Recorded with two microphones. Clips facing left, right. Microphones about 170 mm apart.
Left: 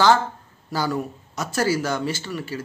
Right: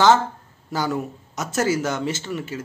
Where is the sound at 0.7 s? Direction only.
20° right (ahead or behind).